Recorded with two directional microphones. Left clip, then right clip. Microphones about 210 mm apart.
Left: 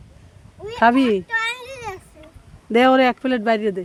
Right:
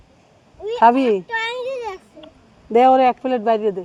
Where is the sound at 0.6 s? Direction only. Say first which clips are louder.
Right 2 dB; 40° left (ahead or behind).